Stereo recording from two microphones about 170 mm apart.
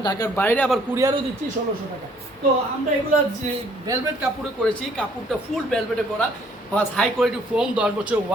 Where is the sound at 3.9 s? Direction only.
20° right (ahead or behind).